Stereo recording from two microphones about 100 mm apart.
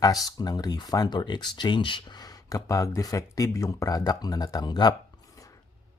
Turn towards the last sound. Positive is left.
turn(degrees=45)  # may be behind; listen again after turning